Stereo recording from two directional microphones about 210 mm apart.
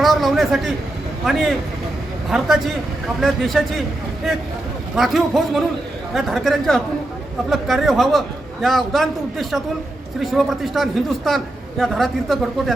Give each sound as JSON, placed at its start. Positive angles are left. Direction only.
{"t": 0.0, "sound": "a sound", "side_deg": 0}
{"t": 1.2, "sound": "a man's voice", "side_deg": 0}
{"t": 3.2, "sound": "a man's voice", "side_deg": 0}